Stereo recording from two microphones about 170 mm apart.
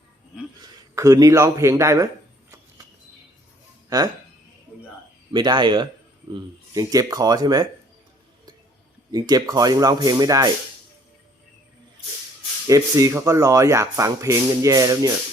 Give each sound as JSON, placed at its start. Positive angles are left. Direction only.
{"t": 0.6, "sound": "a man's voice", "side_deg": -20}
{"t": 3.8, "sound": "speech", "side_deg": -20}
{"t": 5.3, "sound": "speech", "side_deg": -25}
{"t": 9.1, "sound": "speech", "side_deg": -20}
{"t": 12.6, "sound": "speech", "side_deg": -20}